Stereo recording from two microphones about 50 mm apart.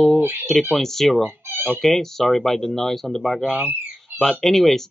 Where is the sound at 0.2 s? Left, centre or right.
Right.